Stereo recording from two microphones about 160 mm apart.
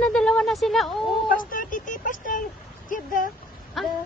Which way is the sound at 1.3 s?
60° left (ahead or behind).